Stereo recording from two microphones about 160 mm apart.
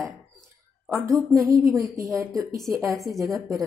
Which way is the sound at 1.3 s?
20° right (ahead or behind).